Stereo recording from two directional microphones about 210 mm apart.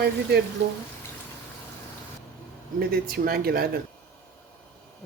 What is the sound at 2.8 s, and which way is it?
Speech, 45° right (ahead or behind).